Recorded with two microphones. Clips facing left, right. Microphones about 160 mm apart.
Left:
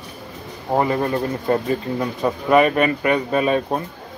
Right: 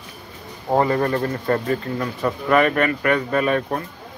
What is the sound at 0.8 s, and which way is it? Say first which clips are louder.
Speech: even; 15° left (ahead or behind).